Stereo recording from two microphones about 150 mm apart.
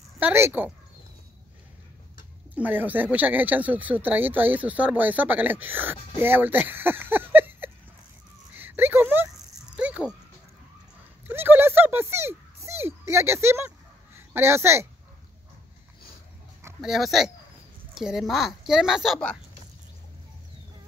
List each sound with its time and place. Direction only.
0.2 s speech: 15° right (ahead or behind)
2.5 s speech: 10° right (ahead or behind)
8.5 s a sound: 15° right (ahead or behind)
11.2 s dog: 15° right (ahead or behind)
16.8 s speech: centre (ahead or behind)